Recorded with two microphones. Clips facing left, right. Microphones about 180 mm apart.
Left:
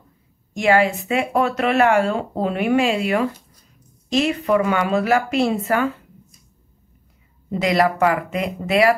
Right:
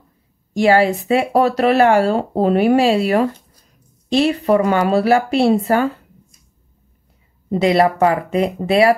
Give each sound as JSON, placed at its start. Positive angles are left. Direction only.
{"t": 0.5, "sound": "speech", "side_deg": -35}
{"t": 7.5, "sound": "speech", "side_deg": -30}